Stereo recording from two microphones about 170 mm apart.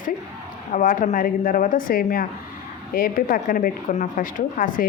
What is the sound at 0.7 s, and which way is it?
A woman's voice, 50° left (ahead or behind).